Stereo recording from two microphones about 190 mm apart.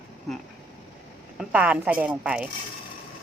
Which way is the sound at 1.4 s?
5° right (ahead or behind).